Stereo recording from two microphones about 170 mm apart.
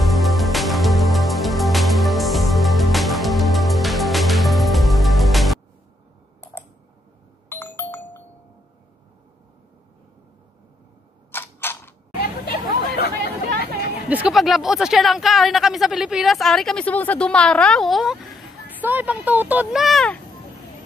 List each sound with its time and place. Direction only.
0.0 s music: centre (ahead or behind)
7.4 s doorbell: 15° left (ahead or behind)
11.3 s camera: 15° left (ahead or behind)
12.2 s chatter: 65° left (ahead or behind)
14.0 s speech: 5° right (ahead or behind)